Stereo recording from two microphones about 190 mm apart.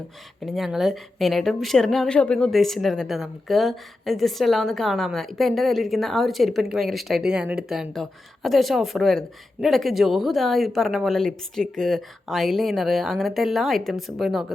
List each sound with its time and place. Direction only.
0.4 s a woman's voice: centre (ahead or behind)